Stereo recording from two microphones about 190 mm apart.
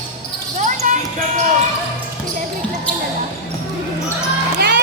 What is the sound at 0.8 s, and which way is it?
Basketball bounce, 40° right (ahead or behind).